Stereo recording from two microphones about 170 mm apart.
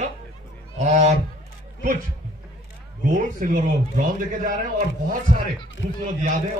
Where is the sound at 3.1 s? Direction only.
50° right (ahead or behind).